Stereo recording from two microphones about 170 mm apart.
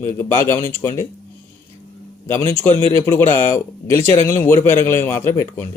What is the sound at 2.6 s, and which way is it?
A man's voice, 10° left (ahead or behind).